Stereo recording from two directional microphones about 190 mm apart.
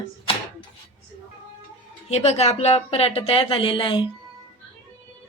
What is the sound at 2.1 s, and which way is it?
Speech, 35° left (ahead or behind).